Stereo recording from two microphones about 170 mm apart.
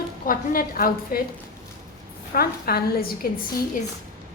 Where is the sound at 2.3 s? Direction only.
60° left (ahead or behind).